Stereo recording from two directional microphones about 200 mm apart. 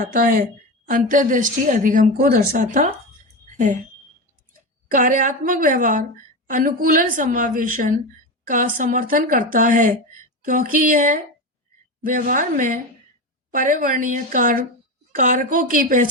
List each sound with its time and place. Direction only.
0.0 s a woman's voice: 45° right (ahead or behind)
4.9 s a woman's voice: 40° right (ahead or behind)